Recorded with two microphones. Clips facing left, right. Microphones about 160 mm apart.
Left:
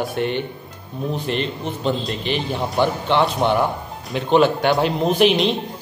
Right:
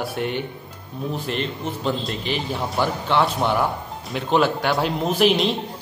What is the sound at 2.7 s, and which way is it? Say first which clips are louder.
Speech: left 4 dB; 25° left (ahead or behind).